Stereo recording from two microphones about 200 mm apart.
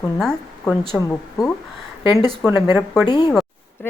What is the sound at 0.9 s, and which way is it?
Speech, 15° left (ahead or behind).